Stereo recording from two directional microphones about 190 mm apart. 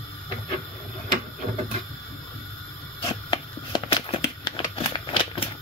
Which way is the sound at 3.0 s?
30° left (ahead or behind).